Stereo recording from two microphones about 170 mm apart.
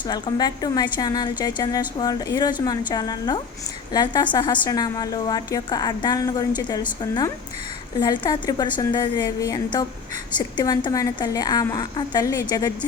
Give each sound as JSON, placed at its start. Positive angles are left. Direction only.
{"t": 0.1, "sound": "a woman's voice", "side_deg": 25}